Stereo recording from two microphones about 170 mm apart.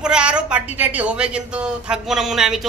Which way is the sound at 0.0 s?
5° right (ahead or behind).